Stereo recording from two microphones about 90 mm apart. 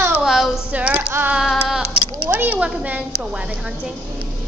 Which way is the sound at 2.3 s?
20° right (ahead or behind).